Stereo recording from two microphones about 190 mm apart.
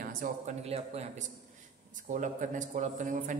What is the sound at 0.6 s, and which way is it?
A man's voice, 35° right (ahead or behind).